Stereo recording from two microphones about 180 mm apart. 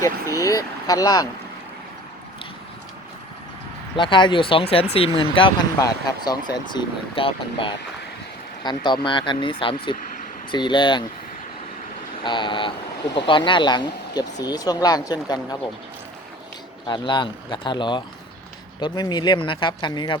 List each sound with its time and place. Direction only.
0.0 s speech: 20° left (ahead or behind)
3.9 s speech: 25° left (ahead or behind)
12.2 s speech: 25° left (ahead or behind)
16.8 s speech: 25° left (ahead or behind)